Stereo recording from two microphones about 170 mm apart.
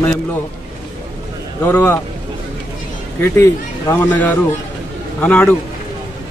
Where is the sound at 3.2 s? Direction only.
15° left (ahead or behind).